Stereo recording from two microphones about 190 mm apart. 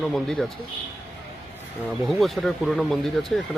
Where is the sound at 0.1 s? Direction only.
Centre (ahead or behind).